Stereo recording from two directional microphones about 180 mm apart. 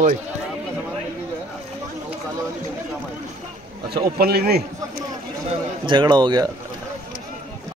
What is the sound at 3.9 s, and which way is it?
Speech, 60° right (ahead or behind).